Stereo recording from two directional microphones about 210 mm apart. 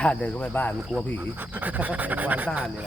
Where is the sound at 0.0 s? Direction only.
5° left (ahead or behind).